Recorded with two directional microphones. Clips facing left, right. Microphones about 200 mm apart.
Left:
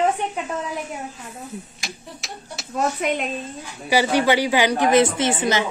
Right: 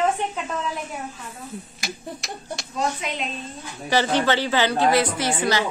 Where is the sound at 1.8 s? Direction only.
Centre (ahead or behind).